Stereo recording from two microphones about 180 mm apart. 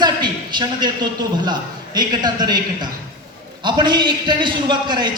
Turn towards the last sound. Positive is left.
turn(degrees=-25)  # may be behind; listen again after turning